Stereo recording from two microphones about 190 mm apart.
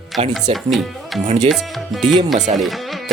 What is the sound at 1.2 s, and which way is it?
Speech, 40° right (ahead or behind).